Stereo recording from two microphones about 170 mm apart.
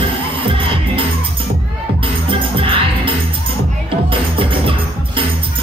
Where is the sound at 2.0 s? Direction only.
30° right (ahead or behind).